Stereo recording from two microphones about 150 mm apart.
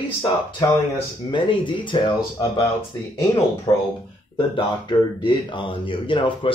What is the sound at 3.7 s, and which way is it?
Speech, 35° left (ahead or behind).